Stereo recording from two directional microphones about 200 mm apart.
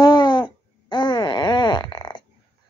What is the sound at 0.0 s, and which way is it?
Babbling, 20° left (ahead or behind).